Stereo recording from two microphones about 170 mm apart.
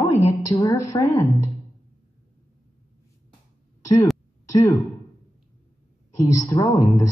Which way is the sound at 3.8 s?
20° left (ahead or behind).